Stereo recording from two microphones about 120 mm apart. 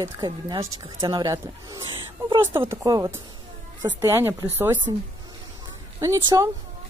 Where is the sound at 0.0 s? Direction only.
30° right (ahead or behind).